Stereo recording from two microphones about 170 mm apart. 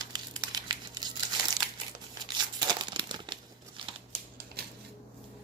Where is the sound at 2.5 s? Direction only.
25° right (ahead or behind).